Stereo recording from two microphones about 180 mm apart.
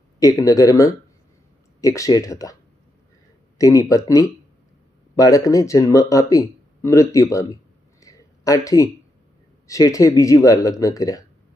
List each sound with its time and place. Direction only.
0.2 s speech: 20° left (ahead or behind)
3.6 s speech: 20° left (ahead or behind)
8.0 s a sound: 20° left (ahead or behind)
9.6 s speech: 20° left (ahead or behind)